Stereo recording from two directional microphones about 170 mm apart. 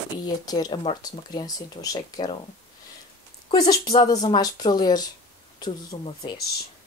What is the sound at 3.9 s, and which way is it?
Speech, 25° left (ahead or behind).